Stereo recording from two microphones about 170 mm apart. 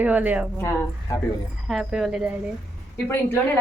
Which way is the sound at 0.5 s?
15° left (ahead or behind).